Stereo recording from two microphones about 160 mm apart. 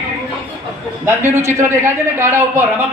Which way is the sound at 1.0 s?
15° right (ahead or behind).